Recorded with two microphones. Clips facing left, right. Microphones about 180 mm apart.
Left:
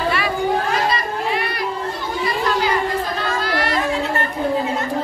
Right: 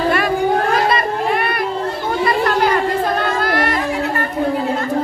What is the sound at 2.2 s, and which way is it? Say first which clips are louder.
Chatter: right 4 dB; 55° right (ahead or behind).